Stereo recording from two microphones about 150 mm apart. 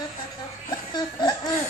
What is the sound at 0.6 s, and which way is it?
Laughter, 25° left (ahead or behind).